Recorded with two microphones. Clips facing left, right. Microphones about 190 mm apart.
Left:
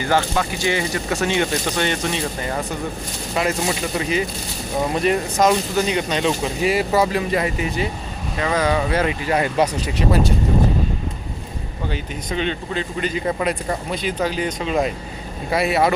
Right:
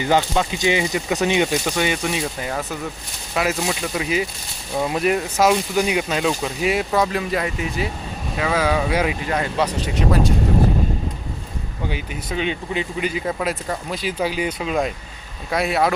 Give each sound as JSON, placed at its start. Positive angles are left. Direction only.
{"t": 0.0, "sound": "speech", "side_deg": -20}
{"t": 9.3, "sound": "speech", "side_deg": 10}
{"t": 11.9, "sound": "speech", "side_deg": -10}